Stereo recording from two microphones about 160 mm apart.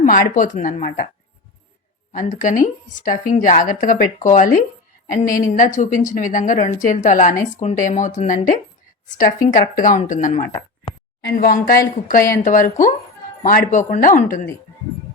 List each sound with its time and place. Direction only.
0.0 s a woman's voice: 55° left (ahead or behind)
2.1 s a woman's voice: 50° left (ahead or behind)
11.3 s a woman's voice: 65° left (ahead or behind)